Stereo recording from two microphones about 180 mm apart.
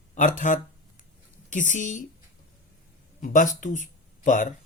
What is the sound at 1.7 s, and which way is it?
Speech, 45° left (ahead or behind).